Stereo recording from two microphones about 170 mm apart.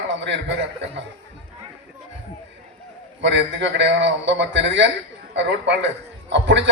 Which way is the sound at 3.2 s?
90° right.